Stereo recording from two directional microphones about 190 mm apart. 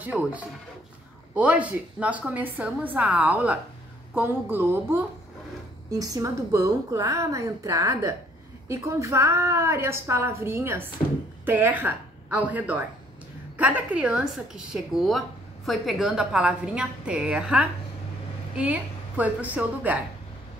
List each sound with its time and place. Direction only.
0.0 s a woman's voice: 5° right (ahead or behind)